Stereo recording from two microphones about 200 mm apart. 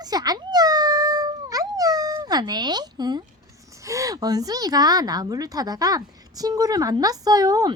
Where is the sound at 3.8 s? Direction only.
15° right (ahead or behind).